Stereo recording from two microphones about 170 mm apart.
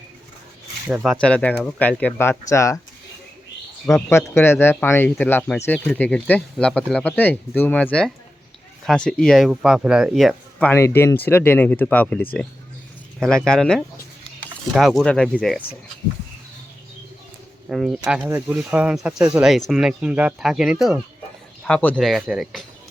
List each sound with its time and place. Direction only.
1.2 s speech: 5° left (ahead or behind)
4.1 s speech: 15° left (ahead or behind); by 10.7 s centre (ahead or behind)
10.7 s speech: 15° left (ahead or behind)
17.7 s speech: 5° right (ahead or behind)
21.6 s speech: 5° left (ahead or behind)